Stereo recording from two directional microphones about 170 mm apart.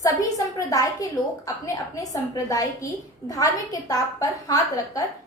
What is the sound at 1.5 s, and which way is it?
A woman's voice, 20° left (ahead or behind).